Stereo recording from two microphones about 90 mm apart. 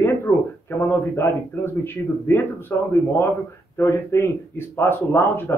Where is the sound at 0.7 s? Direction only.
25° left (ahead or behind).